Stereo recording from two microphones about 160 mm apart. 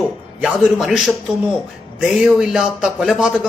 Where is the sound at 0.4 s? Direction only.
Centre (ahead or behind).